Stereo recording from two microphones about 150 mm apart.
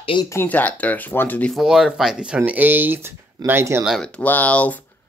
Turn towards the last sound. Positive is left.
turn(degrees=10)  # may be behind; listen again after turning